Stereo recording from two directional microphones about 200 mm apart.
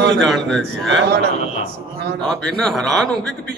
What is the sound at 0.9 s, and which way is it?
Speech, 70° right (ahead or behind).